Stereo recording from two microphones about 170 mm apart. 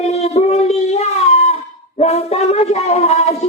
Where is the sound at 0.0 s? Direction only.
40° left (ahead or behind).